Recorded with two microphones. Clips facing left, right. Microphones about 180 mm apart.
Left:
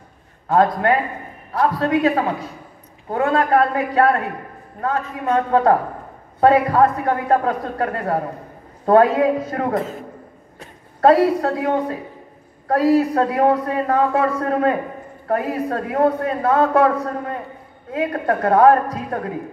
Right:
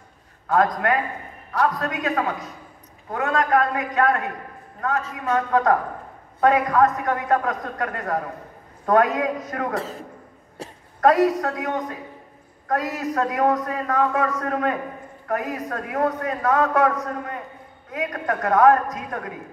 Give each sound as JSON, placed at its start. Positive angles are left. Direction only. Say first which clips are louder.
{"t": 0.5, "sound": "a man's voice", "louder": "left 4 dB", "side_deg": 30}
{"t": 11.0, "sound": "a man's voice", "louder": "left 3 dB", "side_deg": 30}